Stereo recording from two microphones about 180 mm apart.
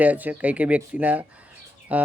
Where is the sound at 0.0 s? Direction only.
10° right (ahead or behind).